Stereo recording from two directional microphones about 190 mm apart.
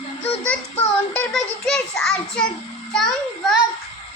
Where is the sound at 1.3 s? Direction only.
5° left (ahead or behind).